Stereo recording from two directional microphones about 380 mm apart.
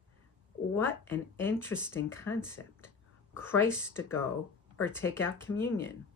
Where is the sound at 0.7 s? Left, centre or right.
Centre.